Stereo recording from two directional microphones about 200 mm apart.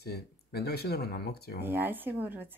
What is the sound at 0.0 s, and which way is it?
Speech, 50° left (ahead or behind).